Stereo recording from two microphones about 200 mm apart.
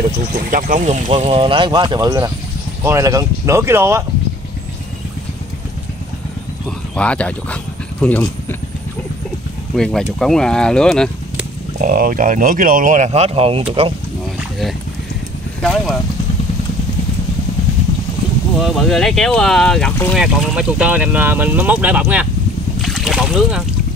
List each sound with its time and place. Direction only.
0.5 s speech: 40° right (ahead or behind); by 4.0 s 15° right (ahead or behind)
7.0 s speech: 5° left (ahead or behind)
9.8 s speech: 5° left (ahead or behind)
11.8 s speech: 45° right (ahead or behind); by 13.9 s 25° right (ahead or behind)
15.6 s speech: centre (ahead or behind)
18.6 s speech: centre (ahead or behind)
22.8 s boat: centre (ahead or behind)